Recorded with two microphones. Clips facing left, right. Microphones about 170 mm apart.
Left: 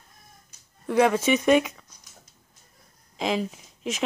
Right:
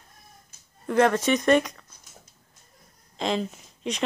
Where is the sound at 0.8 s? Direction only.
5° left (ahead or behind).